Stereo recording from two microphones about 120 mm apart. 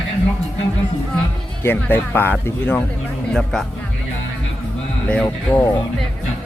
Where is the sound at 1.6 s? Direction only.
15° left (ahead or behind).